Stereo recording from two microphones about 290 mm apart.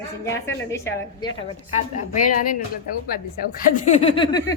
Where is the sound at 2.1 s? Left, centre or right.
Left.